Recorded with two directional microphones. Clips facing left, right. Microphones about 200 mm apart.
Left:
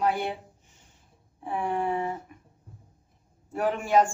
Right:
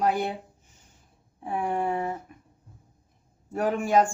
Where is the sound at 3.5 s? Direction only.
45° right (ahead or behind).